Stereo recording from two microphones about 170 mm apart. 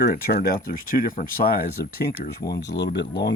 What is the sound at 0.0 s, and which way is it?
Speech, 60° left (ahead or behind).